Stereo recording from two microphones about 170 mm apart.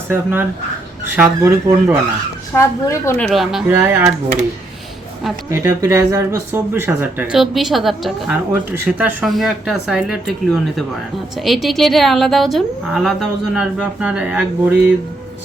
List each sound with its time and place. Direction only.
0.1 s speech: 10° right (ahead or behind)
2.6 s speech: 15° left (ahead or behind)
3.2 s a woman's voice: centre (ahead or behind)
3.7 s speech: 10° right (ahead or behind)
5.6 s speech: 15° right (ahead or behind); by 8.4 s centre (ahead or behind)
8.7 s speech: 10° right (ahead or behind)
9.2 s a woman's voice: centre (ahead or behind)